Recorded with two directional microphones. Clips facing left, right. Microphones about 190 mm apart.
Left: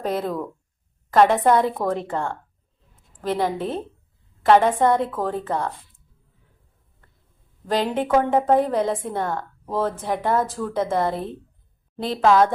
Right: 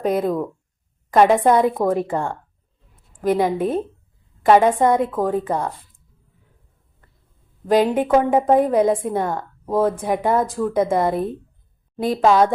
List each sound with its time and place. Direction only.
0.0 s a woman's voice: 10° right (ahead or behind)
7.7 s a woman's voice: 15° right (ahead or behind)